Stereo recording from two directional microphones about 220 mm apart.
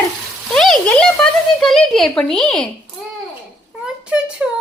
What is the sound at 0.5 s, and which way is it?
Speech, centre (ahead or behind).